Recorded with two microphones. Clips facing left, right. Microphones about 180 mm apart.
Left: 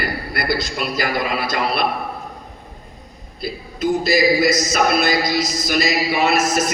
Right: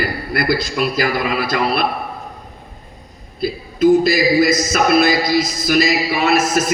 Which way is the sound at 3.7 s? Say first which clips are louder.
Right 5 dB; 55° right (ahead or behind).